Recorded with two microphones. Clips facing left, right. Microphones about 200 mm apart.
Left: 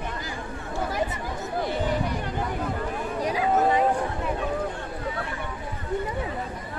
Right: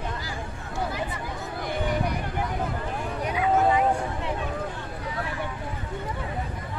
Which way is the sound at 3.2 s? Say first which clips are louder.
Even; 35° left (ahead or behind).